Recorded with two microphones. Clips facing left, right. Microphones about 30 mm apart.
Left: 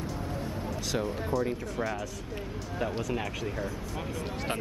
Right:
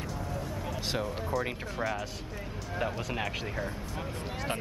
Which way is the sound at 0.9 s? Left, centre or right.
Centre.